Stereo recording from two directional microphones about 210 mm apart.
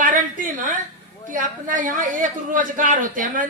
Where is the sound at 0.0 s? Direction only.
40° right (ahead or behind).